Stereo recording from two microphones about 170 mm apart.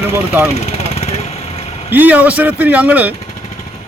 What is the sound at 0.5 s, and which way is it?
Vehicle, 40° left (ahead or behind).